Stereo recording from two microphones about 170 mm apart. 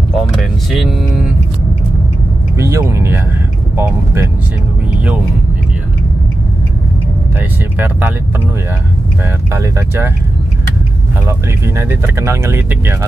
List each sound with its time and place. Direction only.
0.4 s vehicle: centre (ahead or behind)
2.5 s vehicle: 15° right (ahead or behind)
3.7 s speech: 15° right (ahead or behind)
7.3 s speech: 10° right (ahead or behind)
9.5 s speech: 15° right (ahead or behind)
11.2 s speech: 15° right (ahead or behind)